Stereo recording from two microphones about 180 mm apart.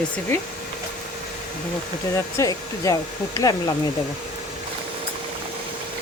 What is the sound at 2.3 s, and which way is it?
Hair dryer, 20° left (ahead or behind).